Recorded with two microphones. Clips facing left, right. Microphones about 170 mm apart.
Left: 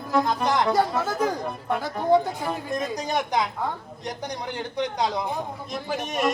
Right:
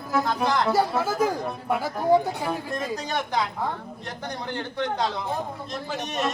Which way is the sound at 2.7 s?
15° left (ahead or behind).